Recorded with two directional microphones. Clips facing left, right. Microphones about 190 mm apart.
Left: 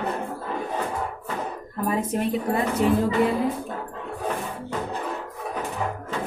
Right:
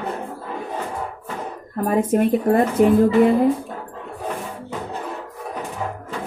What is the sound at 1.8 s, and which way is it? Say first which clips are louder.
A woman's voice: right 7 dB; 50° right (ahead or behind).